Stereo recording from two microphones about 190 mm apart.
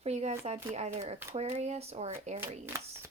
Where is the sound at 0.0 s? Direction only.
35° right (ahead or behind).